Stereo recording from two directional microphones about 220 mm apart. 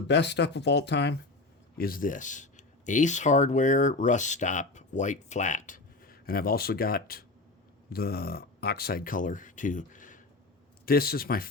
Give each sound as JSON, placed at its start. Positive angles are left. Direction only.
{"t": 0.1, "sound": "speech", "side_deg": 50}
{"t": 1.8, "sound": "speech", "side_deg": 40}